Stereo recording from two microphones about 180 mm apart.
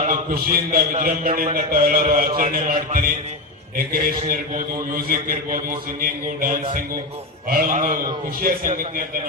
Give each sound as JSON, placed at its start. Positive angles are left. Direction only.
{"t": 0.0, "sound": "a man's voice", "side_deg": -50}